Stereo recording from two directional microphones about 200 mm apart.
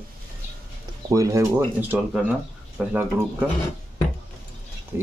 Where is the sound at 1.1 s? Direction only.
15° right (ahead or behind).